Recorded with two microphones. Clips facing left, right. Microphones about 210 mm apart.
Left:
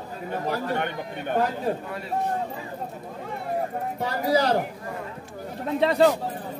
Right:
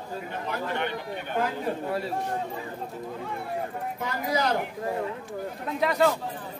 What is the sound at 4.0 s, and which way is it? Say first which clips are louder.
Speech: left 5 dB; 35° left (ahead or behind).